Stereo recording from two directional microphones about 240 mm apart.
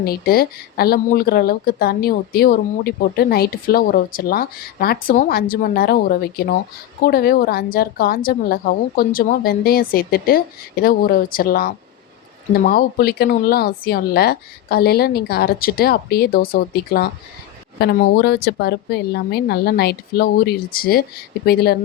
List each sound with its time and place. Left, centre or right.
0.0 s a woman's voice: left